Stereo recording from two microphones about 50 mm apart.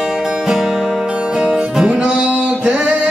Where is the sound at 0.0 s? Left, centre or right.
Centre.